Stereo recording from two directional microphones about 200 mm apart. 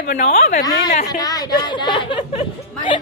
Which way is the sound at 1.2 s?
20° left (ahead or behind).